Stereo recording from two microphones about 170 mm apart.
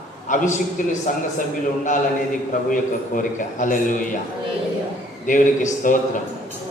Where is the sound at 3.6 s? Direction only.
50° left (ahead or behind).